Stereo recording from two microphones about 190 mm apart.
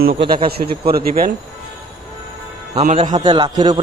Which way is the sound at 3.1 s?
25° right (ahead or behind).